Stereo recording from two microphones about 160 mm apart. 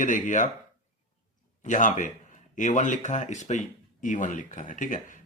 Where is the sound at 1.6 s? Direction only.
55° left (ahead or behind).